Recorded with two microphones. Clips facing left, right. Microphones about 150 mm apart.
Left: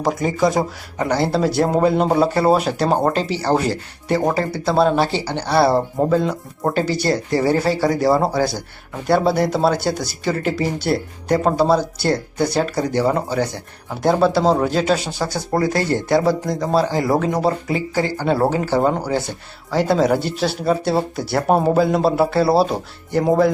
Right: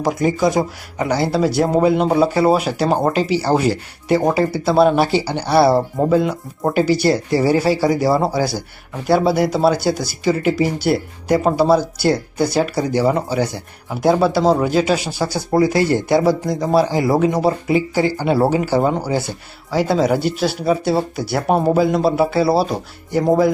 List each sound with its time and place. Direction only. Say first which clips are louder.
0.0 s speech: right 1 dB; 5° right (ahead or behind)